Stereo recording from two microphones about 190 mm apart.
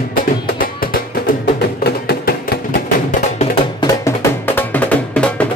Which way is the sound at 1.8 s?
55° left (ahead or behind).